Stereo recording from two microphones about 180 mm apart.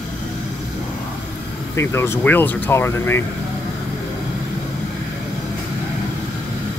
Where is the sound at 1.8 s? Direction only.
15° left (ahead or behind).